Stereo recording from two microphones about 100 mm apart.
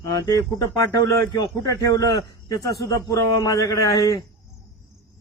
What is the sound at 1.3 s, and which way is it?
Speech, 45° left (ahead or behind).